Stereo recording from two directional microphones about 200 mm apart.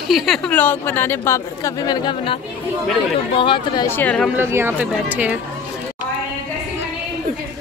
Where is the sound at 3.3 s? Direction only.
25° left (ahead or behind).